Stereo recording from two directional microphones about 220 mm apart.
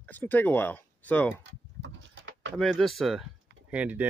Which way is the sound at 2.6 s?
5° left (ahead or behind).